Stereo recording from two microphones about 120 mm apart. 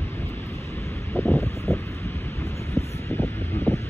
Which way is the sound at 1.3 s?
25° left (ahead or behind).